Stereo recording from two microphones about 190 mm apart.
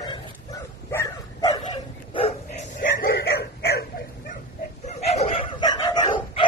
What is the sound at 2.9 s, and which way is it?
Chicken, 55° left (ahead or behind).